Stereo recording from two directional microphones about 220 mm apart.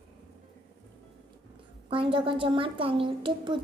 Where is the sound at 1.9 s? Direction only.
25° right (ahead or behind).